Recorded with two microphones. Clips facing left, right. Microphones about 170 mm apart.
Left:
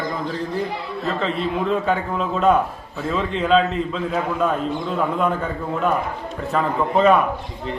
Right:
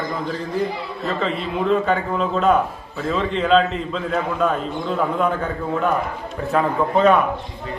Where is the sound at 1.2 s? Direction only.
Centre (ahead or behind).